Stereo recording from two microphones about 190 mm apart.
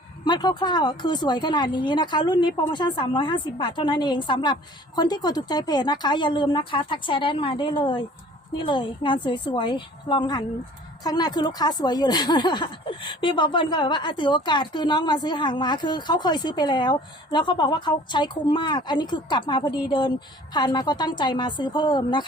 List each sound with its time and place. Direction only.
0.3 s speech: 20° left (ahead or behind)